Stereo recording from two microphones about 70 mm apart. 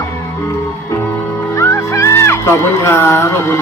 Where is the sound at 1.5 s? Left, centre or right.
Left.